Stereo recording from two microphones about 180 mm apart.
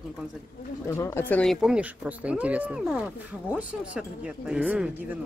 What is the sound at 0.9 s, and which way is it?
Speech, 15° left (ahead or behind).